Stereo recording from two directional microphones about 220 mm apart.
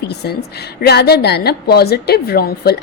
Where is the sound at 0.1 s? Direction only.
50° left (ahead or behind).